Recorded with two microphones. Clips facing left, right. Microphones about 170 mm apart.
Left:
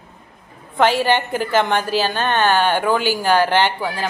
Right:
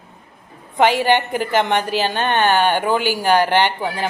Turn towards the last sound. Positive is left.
turn(degrees=-20)  # may be behind; listen again after turning